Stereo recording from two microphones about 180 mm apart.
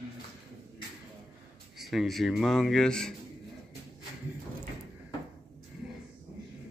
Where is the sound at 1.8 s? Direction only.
Centre (ahead or behind).